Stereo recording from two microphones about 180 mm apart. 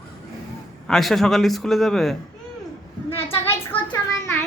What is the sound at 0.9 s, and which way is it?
A man's voice, centre (ahead or behind).